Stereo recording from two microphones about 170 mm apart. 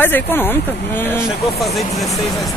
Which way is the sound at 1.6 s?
Centre (ahead or behind).